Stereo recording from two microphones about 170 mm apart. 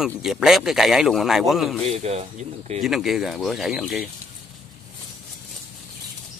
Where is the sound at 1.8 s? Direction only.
40° right (ahead or behind).